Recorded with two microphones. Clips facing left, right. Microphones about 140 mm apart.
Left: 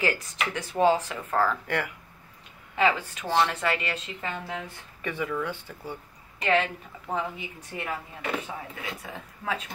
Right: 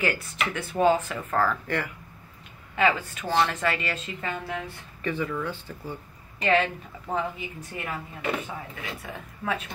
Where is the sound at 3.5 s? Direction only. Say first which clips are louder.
Even; 15° left (ahead or behind).